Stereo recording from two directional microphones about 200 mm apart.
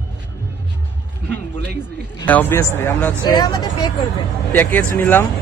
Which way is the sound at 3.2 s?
20° left (ahead or behind).